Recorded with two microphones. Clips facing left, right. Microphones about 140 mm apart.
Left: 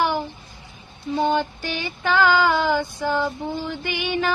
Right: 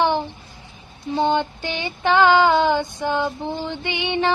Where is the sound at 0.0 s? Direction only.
25° right (ahead or behind).